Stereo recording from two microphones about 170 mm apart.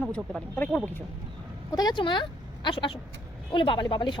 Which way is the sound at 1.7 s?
25° left (ahead or behind).